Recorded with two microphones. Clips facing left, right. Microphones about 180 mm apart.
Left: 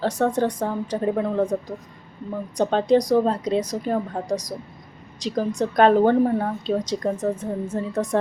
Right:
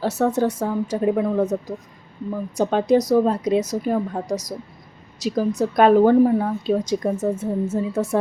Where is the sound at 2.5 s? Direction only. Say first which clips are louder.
Right 1 dB; 10° right (ahead or behind).